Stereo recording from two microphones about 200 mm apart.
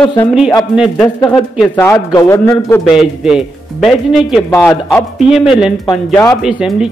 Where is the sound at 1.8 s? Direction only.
10° left (ahead or behind).